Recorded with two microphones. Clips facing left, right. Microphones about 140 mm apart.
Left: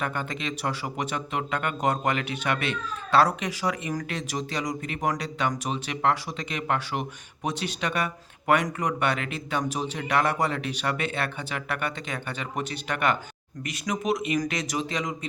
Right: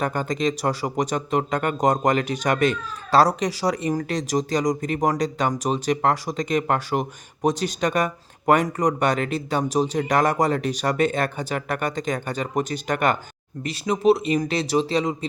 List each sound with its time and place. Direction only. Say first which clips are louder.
0.0 s speech: right 7 dB; 40° right (ahead or behind)
13.6 s speech: right 6 dB; 30° right (ahead or behind)